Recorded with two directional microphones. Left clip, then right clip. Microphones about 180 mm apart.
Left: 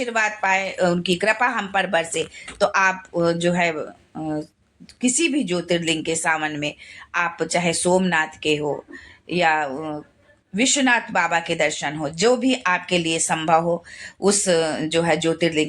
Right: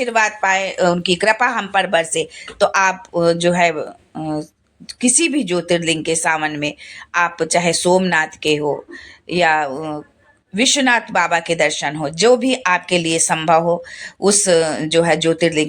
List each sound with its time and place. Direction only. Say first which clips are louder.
0.0 s speech: right 5 dB; 40° right (ahead or behind)